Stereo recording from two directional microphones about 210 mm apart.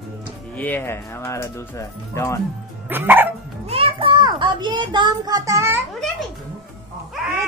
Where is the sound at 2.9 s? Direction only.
10° right (ahead or behind).